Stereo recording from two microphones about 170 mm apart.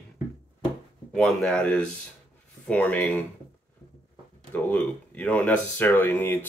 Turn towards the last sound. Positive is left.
turn(degrees=10)  # may be behind; listen again after turning